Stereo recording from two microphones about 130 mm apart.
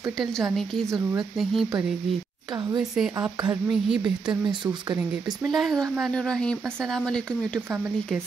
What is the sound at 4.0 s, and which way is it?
Speech, 35° right (ahead or behind).